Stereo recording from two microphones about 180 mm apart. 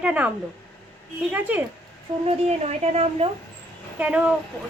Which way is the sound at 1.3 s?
10° right (ahead or behind).